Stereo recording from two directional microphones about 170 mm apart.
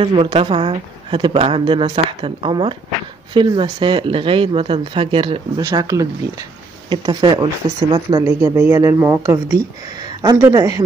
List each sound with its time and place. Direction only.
0.0 s speech: 30° right (ahead or behind)
5.6 s a woman's voice: 20° right (ahead or behind)